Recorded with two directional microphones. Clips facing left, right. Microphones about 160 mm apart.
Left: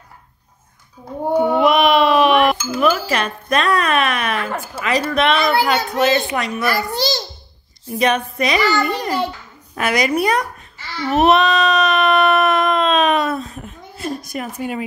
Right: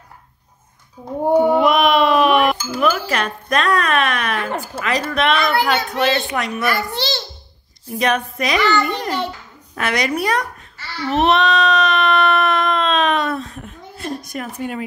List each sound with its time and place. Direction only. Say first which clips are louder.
1.0 s speech: right 3 dB; 25° right (ahead or behind)
1.3 s a sound: right 2 dB; 10° right (ahead or behind)
1.6 s a sound: left 1 dB; 5° left (ahead or behind)
2.8 s speech: left 1 dB; centre (ahead or behind)
6.6 s a child's voice: left 3 dB; 40° left (ahead or behind)
7.9 s speech: left 1 dB; centre (ahead or behind)
9.8 s babbling: left 3 dB; 10° left (ahead or behind)